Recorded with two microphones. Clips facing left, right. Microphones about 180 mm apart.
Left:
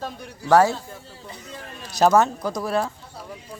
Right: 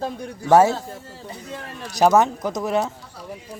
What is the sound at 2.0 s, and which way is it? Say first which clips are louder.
Speech: right 1 dB; 15° right (ahead or behind).